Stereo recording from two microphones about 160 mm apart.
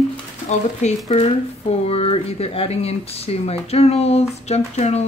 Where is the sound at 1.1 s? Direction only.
40° left (ahead or behind).